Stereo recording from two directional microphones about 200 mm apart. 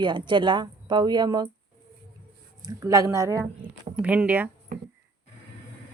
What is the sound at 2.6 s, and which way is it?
Speech, 15° right (ahead or behind).